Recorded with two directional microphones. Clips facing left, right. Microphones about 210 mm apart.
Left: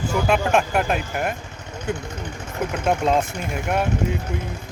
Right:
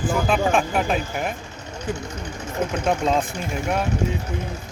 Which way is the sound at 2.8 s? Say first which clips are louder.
Left 2 dB; 5° left (ahead or behind).